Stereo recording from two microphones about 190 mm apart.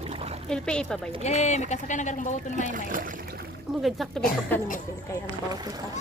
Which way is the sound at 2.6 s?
45° right (ahead or behind).